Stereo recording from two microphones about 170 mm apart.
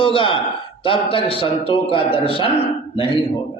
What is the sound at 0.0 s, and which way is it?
A man's voice, 30° left (ahead or behind).